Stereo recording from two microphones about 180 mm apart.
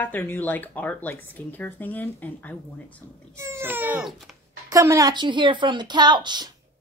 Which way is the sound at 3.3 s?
15° right (ahead or behind).